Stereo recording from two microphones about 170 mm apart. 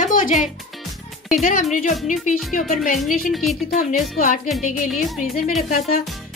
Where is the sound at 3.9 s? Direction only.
50° left (ahead or behind).